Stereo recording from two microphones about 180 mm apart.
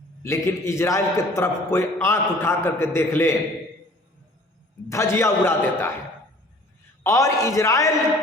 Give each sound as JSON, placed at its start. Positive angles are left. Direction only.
{"t": 0.2, "sound": "a man's voice", "side_deg": 15}
{"t": 4.9, "sound": "a man's voice", "side_deg": 15}
{"t": 7.0, "sound": "a man's voice", "side_deg": 15}